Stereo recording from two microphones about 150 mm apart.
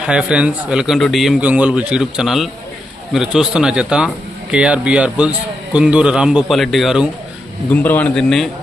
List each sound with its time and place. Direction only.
0.0 s a man's voice: 5° right (ahead or behind)
7.7 s a man's voice: 10° left (ahead or behind)